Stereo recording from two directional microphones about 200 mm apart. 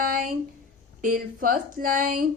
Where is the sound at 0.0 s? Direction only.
45° right (ahead or behind).